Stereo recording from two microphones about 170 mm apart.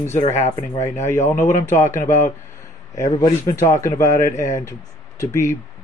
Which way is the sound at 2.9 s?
20° left (ahead or behind).